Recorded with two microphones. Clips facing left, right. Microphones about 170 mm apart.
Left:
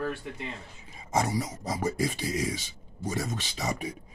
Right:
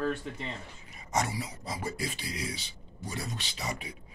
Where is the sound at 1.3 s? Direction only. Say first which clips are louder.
Left 6 dB; 45° left (ahead or behind).